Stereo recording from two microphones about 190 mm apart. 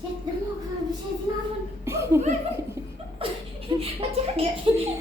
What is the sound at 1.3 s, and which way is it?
Speech, 20° right (ahead or behind).